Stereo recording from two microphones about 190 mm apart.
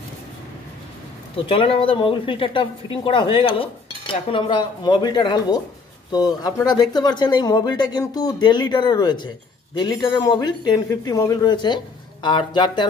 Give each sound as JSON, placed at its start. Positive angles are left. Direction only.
{"t": 1.4, "sound": "a woman's voice", "side_deg": 25}